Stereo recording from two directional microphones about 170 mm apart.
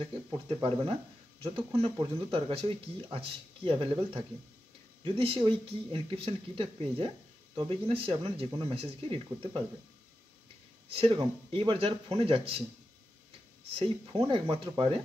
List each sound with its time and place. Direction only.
0.0 s speech: 35° right (ahead or behind)
3.6 s speech: 30° right (ahead or behind)
10.9 s speech: 30° right (ahead or behind)
13.7 s speech: 35° right (ahead or behind)